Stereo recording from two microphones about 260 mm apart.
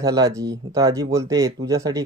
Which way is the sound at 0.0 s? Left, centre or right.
Centre.